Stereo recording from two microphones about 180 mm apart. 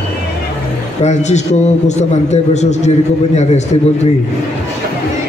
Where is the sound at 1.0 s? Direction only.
40° left (ahead or behind).